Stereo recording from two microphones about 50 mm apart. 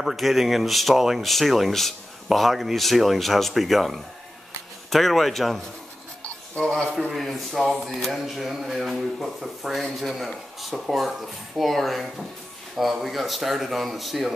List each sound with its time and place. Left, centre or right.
0.0 s speech: centre
6.6 s a man's voice: centre